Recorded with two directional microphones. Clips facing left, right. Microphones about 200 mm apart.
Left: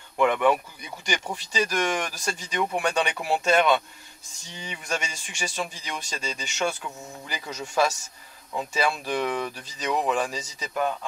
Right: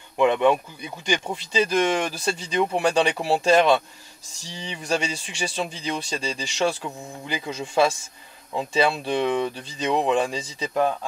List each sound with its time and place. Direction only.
0.2 s speech: 20° right (ahead or behind)